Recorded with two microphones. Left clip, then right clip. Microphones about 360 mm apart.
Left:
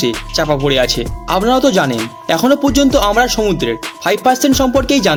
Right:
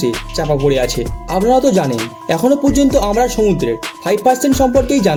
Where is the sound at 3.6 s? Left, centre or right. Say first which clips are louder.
Left 1 dB; left.